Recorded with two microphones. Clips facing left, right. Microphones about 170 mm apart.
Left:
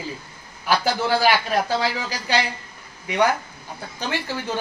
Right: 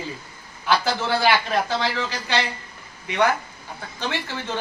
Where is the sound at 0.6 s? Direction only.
10° left (ahead or behind).